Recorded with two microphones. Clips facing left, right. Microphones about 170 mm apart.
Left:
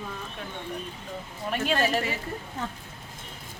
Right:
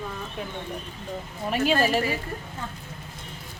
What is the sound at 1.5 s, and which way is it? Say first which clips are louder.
Speech: right 3 dB; 5° right (ahead or behind).